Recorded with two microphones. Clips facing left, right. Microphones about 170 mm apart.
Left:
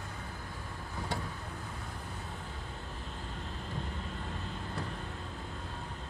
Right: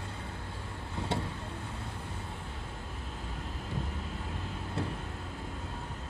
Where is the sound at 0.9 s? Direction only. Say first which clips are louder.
Right 4 dB; 25° right (ahead or behind).